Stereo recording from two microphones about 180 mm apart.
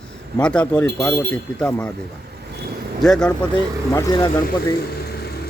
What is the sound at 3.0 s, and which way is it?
Speech, 5° left (ahead or behind).